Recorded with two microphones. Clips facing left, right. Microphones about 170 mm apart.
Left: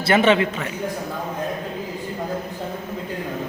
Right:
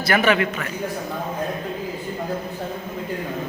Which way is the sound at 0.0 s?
25° left (ahead or behind).